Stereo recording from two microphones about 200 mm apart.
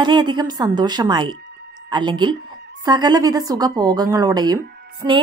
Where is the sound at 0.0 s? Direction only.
20° right (ahead or behind).